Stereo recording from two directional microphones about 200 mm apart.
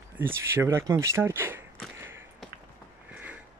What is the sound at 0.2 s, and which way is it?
Speech, 10° right (ahead or behind).